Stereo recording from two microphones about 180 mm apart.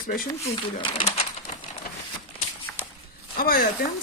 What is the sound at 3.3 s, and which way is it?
Speech, 55° left (ahead or behind).